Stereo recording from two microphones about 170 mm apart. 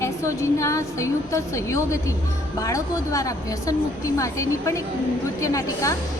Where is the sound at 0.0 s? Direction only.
15° left (ahead or behind).